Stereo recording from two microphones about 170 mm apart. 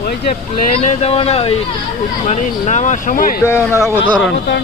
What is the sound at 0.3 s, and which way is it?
Speech, 40° left (ahead or behind).